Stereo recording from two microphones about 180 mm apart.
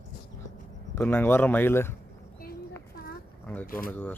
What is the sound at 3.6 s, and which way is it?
Speech, 55° left (ahead or behind).